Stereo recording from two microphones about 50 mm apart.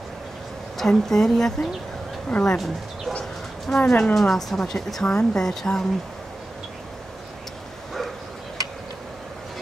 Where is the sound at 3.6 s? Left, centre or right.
Centre.